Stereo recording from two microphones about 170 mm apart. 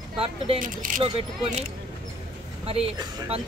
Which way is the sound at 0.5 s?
50° right (ahead or behind).